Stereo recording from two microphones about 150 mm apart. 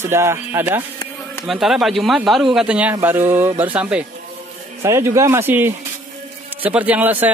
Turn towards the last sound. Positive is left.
turn(degrees=-10)  # may be behind; listen again after turning